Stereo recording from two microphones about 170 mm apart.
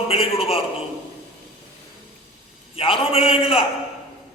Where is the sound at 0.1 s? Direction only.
35° left (ahead or behind).